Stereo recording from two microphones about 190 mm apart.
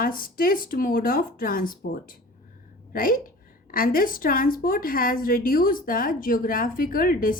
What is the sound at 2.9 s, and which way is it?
A woman's voice, 50° left (ahead or behind).